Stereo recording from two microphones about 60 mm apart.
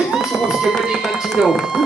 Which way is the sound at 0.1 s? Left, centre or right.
Centre.